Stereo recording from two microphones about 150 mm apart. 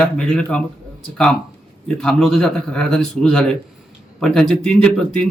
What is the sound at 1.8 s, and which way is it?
Speech, 5° left (ahead or behind).